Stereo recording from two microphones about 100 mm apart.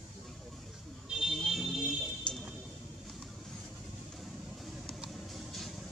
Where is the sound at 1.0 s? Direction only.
5° right (ahead or behind).